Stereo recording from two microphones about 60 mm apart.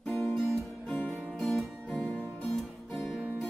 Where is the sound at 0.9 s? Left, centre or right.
Left.